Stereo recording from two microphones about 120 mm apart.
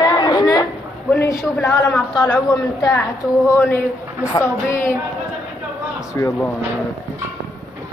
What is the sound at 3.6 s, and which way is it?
Speech, 20° left (ahead or behind).